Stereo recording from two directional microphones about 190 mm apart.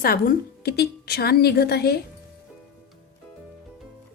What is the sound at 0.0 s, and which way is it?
A woman's voice, 50° left (ahead or behind).